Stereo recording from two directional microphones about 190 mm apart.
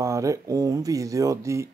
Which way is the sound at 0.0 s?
15° right (ahead or behind).